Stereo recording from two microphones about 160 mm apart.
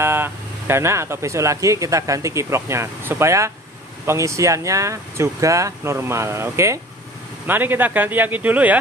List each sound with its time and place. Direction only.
0.0 s speech: 15° right (ahead or behind)